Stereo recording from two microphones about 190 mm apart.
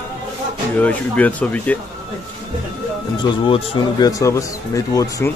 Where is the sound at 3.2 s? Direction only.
25° left (ahead or behind).